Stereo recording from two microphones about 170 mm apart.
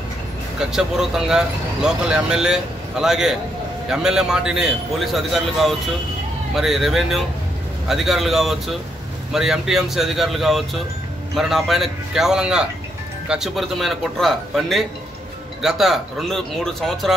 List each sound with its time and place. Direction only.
0.6 s speech: 5° right (ahead or behind)